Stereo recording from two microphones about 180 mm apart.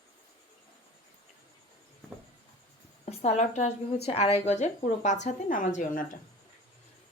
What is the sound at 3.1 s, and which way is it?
A woman's voice, 40° left (ahead or behind).